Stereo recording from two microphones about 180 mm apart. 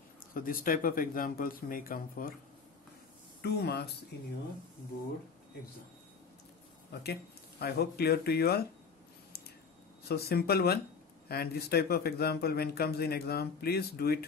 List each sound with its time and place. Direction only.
0.3 s speech: 50° left (ahead or behind)
3.4 s speech: 65° left (ahead or behind)
6.9 s speech: 65° left (ahead or behind)
10.0 s speech: 60° left (ahead or behind)